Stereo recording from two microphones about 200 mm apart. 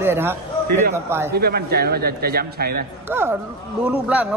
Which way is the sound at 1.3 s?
50° right (ahead or behind).